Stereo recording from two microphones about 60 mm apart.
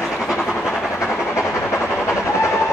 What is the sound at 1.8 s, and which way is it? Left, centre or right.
Train, left.